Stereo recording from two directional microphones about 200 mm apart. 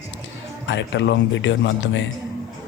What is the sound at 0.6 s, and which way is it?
A man's voice, 65° left (ahead or behind).